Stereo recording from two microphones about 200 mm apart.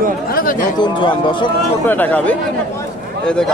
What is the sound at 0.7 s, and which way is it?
Speech, 25° left (ahead or behind).